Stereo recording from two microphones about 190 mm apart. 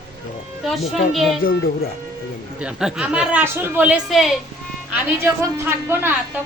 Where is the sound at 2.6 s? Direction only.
5° right (ahead or behind).